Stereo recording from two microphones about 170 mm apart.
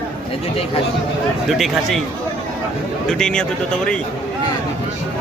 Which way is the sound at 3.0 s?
5° left (ahead or behind).